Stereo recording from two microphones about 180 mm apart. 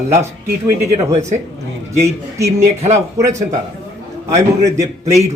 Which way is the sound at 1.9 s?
15° right (ahead or behind).